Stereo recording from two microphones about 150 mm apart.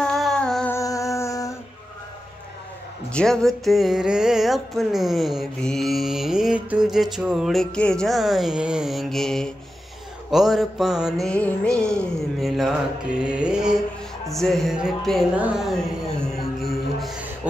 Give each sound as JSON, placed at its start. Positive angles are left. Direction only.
{"t": 0.0, "sound": "music", "side_deg": 5}
{"t": 0.7, "sound": "humming", "side_deg": 20}
{"t": 3.1, "sound": "music", "side_deg": 5}